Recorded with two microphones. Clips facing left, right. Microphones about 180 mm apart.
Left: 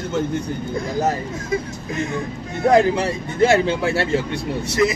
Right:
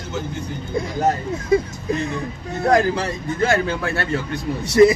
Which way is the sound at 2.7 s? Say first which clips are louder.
Left 2 dB; 25° left (ahead or behind).